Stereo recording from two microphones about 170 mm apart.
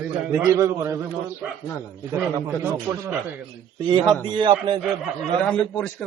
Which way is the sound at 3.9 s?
25° right (ahead or behind).